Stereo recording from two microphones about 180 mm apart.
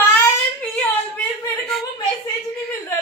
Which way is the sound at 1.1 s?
Centre (ahead or behind).